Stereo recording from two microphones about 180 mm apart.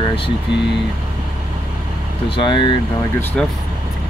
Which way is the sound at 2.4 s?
25° left (ahead or behind).